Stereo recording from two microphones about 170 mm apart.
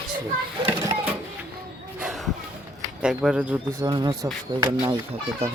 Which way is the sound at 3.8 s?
25° right (ahead or behind).